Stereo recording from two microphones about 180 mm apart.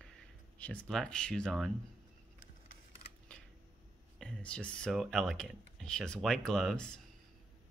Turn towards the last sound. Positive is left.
turn(degrees=5)  # may be behind; listen again after turning